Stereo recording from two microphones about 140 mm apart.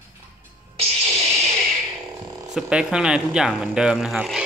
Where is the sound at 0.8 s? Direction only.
45° right (ahead or behind).